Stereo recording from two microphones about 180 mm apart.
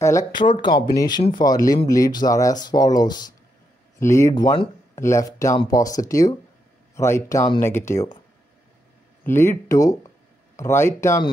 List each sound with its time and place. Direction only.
0.3 s speech: 25° left (ahead or behind)
9.2 s speech: 15° left (ahead or behind)